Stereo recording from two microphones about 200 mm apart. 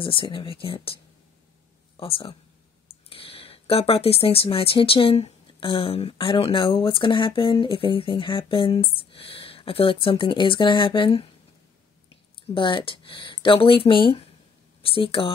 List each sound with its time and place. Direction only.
0.0 s speech: 25° left (ahead or behind)
2.0 s speech: 25° left (ahead or behind)
12.4 s speech: 25° left (ahead or behind)